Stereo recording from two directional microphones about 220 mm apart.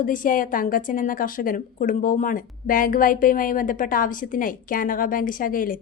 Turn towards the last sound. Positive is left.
turn(degrees=40)  # may be behind; listen again after turning